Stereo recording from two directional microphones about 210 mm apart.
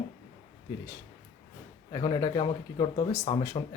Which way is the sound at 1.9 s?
20° left (ahead or behind).